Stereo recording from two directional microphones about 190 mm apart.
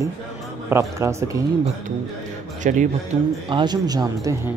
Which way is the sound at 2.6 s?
40° right (ahead or behind).